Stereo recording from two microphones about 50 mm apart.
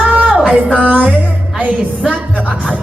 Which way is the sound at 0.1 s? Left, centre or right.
Right.